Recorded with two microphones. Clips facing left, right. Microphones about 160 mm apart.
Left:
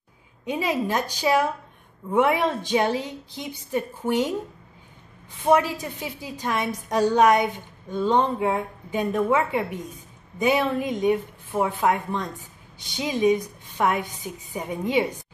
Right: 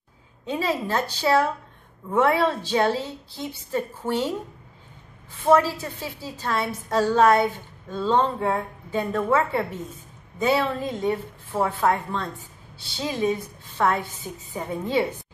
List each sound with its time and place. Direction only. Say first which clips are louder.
0.5 s a woman's voice: left 1 dB; 15° left (ahead or behind)
5.4 s a woman's voice: right 1 dB; 15° left (ahead or behind)